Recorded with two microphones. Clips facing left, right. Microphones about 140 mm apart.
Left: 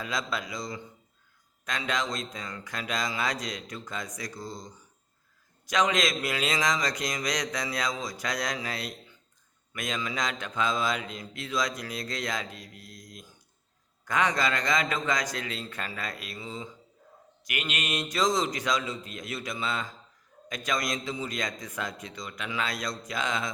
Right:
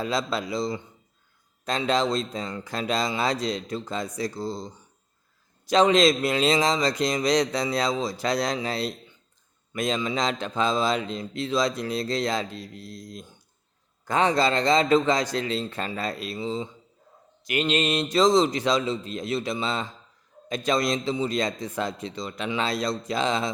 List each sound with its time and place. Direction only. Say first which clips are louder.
0.0 s a man's voice: right 6 dB; 30° right (ahead or behind)